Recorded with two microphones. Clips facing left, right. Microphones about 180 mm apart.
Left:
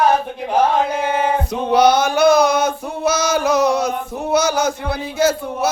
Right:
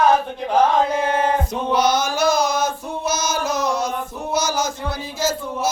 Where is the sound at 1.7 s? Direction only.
60° left (ahead or behind).